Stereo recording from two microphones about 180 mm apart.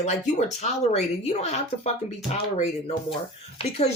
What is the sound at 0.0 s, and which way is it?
Speech, 40° left (ahead or behind).